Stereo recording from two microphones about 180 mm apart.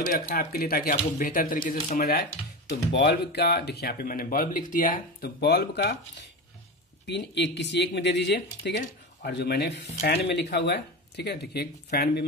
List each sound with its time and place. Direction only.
0.0 s speech: 50° left (ahead or behind)
2.9 s speech: 75° left (ahead or behind)
7.1 s speech: 75° left (ahead or behind)